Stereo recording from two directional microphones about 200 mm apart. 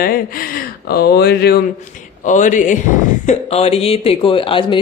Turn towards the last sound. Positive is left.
turn(degrees=25)  # may be behind; listen again after turning